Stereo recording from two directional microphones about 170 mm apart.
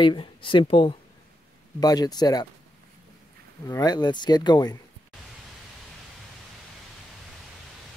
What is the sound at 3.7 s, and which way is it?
Speech, 25° left (ahead or behind).